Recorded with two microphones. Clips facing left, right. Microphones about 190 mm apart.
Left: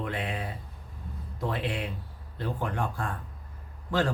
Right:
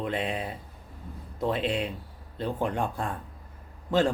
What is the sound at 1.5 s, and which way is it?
Speech, 20° right (ahead or behind).